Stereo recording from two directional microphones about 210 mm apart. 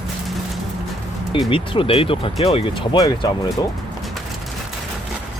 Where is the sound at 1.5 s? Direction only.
25° left (ahead or behind).